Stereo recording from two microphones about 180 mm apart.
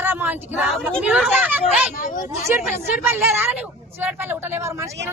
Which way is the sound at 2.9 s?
10° right (ahead or behind).